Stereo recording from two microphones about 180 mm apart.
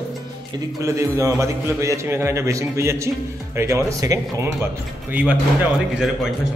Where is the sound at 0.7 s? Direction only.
15° right (ahead or behind).